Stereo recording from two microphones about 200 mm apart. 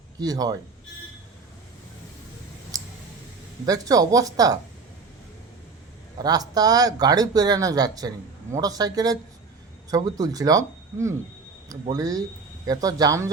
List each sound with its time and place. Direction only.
0.2 s speech: 20° right (ahead or behind)
3.7 s speech: 20° right (ahead or behind)
6.1 s speech: 20° right (ahead or behind)